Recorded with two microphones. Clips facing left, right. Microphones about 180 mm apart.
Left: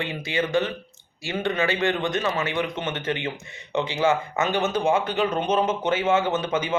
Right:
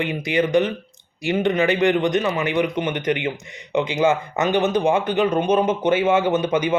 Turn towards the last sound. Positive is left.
turn(degrees=-15)  # may be behind; listen again after turning